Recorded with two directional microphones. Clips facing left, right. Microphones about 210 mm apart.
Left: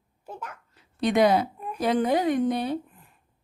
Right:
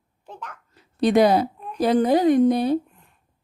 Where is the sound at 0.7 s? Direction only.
35° right (ahead or behind).